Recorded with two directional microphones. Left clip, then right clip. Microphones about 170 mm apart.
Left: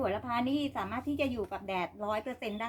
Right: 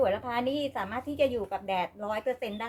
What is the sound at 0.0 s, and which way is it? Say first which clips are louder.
A woman's voice: right 5 dB; 15° right (ahead or behind).